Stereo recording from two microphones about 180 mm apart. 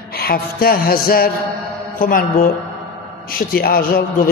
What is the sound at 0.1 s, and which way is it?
A man's voice, 55° left (ahead or behind).